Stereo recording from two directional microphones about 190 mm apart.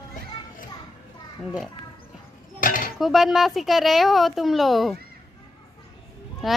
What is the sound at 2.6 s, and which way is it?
Cutlery, 45° left (ahead or behind).